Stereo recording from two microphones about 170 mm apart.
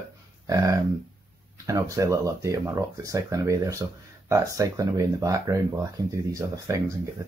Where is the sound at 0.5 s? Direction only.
20° right (ahead or behind).